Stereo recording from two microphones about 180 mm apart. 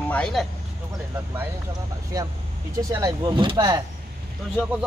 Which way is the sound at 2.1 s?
20° right (ahead or behind).